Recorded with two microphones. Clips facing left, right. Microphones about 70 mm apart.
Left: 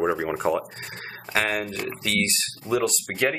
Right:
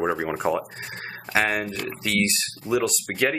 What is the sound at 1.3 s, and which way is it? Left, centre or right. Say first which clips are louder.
Speech: right 2 dB; centre.